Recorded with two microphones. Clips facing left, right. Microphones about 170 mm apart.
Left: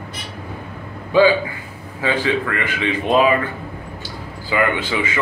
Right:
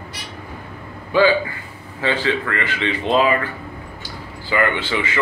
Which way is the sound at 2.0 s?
10° left (ahead or behind).